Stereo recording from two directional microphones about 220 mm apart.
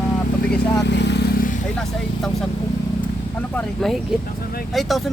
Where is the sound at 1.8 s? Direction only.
Centre (ahead or behind).